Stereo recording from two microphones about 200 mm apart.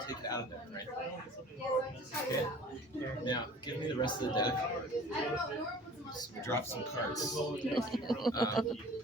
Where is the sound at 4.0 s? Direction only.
20° left (ahead or behind).